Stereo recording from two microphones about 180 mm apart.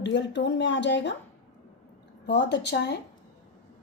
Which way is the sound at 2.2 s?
70° left (ahead or behind).